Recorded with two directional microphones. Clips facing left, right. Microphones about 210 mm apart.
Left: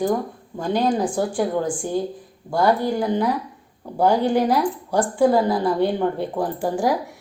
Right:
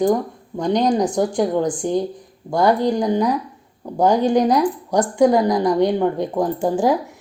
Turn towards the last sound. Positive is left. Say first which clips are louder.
# right 4 dB
turn(degrees=-15)  # may be behind; listen again after turning